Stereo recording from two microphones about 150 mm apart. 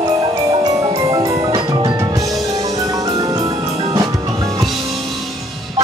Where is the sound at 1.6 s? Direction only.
30° right (ahead or behind).